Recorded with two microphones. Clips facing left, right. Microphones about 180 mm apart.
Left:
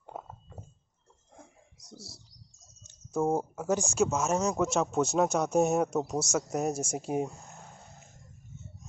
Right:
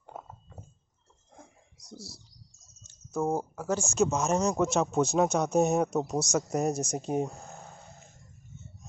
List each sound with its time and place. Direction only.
1.8 s speech: centre (ahead or behind)
2.8 s bird: 20° left (ahead or behind)
3.3 s speech: 20° left (ahead or behind)